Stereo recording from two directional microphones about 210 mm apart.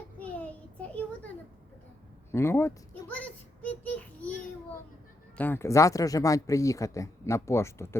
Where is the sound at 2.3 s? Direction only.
10° left (ahead or behind).